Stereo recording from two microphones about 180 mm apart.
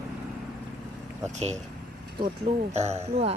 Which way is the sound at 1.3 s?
40° right (ahead or behind).